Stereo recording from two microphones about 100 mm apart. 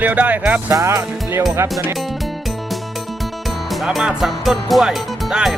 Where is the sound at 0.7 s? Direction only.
30° right (ahead or behind).